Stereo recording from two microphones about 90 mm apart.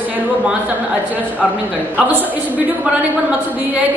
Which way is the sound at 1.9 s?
20° right (ahead or behind).